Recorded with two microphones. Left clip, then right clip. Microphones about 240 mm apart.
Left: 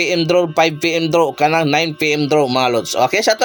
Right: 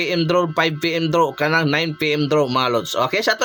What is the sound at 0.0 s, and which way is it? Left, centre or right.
Speech, centre.